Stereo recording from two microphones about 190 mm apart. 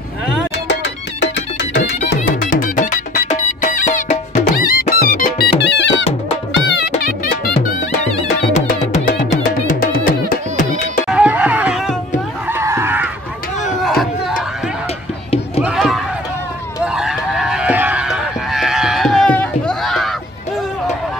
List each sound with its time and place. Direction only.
0.7 s music: 65° left (ahead or behind)
2.0 s music: 40° left (ahead or behind); by 6.0 s 70° left (ahead or behind)
7.0 s music: 55° left (ahead or behind)
8.5 s music: 35° left (ahead or behind)
11.1 s music: 5° right (ahead or behind)
12.4 s a sound: 15° right (ahead or behind)
13.8 s battle cry: centre (ahead or behind)
15.6 s a sound: centre (ahead or behind)
16.8 s honk: 5° right (ahead or behind)